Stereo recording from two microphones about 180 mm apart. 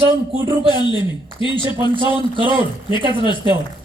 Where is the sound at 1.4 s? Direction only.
30° right (ahead or behind).